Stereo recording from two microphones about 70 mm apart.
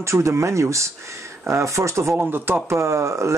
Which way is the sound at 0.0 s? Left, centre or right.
Right.